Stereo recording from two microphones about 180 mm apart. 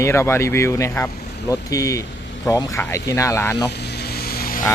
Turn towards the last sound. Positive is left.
turn(degrees=55)  # may be behind; listen again after turning